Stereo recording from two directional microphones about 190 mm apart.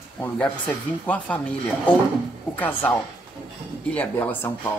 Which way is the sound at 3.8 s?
10° left (ahead or behind).